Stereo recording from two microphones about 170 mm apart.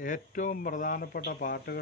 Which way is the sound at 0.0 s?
50° left (ahead or behind).